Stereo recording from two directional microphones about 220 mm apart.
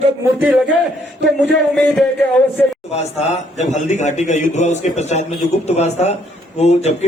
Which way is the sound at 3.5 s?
30° left (ahead or behind).